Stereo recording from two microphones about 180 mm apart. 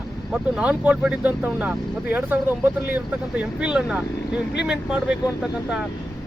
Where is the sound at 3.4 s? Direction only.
5° right (ahead or behind).